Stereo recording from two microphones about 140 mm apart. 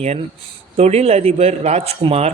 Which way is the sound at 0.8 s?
50° right (ahead or behind).